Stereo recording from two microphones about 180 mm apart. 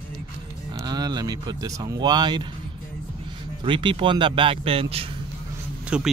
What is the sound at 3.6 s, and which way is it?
Speech, 25° right (ahead or behind).